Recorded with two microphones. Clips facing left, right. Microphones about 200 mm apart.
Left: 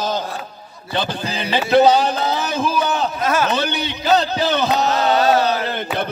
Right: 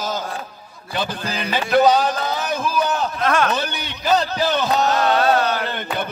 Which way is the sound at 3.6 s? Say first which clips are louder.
Left 4 dB; 70° left (ahead or behind).